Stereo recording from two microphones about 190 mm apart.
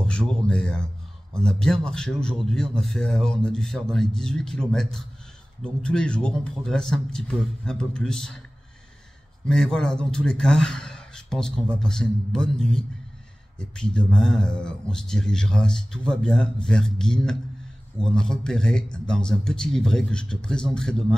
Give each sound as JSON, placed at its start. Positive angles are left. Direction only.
{"t": 0.0, "sound": "a man's voice", "side_deg": 5}
{"t": 9.5, "sound": "a man's voice", "side_deg": 5}